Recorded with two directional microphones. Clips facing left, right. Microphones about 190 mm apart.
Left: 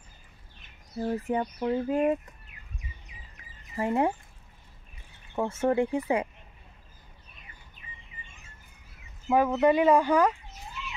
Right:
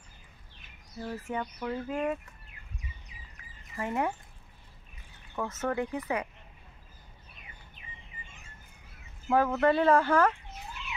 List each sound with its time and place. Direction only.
0.9 s speech: 30° left (ahead or behind)
2.5 s a sound: 30° right (ahead or behind)
3.7 s speech: 30° left (ahead or behind)
5.3 s speech: 30° left (ahead or behind)
9.3 s speech: 15° left (ahead or behind)